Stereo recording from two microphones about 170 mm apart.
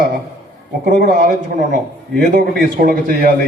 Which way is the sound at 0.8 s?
55° right (ahead or behind).